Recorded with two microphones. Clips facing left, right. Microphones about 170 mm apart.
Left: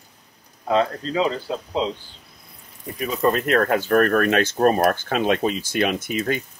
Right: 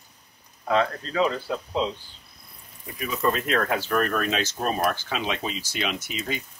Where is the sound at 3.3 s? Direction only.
45° left (ahead or behind).